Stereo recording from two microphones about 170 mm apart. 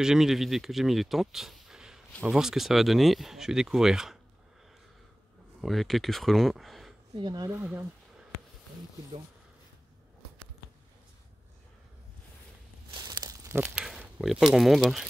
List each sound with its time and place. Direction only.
0.0 s speech: centre (ahead or behind)
5.6 s speech: centre (ahead or behind)
7.2 s speech: 25° right (ahead or behind)
12.9 s crumpling: 20° right (ahead or behind); by 15.0 s centre (ahead or behind)